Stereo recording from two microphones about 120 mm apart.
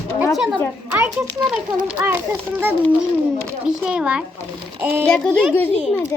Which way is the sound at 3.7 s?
10° right (ahead or behind).